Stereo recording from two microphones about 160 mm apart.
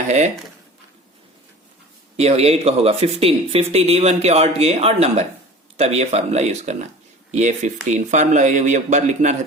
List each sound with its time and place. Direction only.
2.1 s speech: 40° right (ahead or behind)